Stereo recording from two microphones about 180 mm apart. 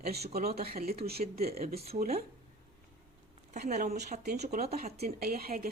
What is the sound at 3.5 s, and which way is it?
A woman's voice, 40° right (ahead or behind).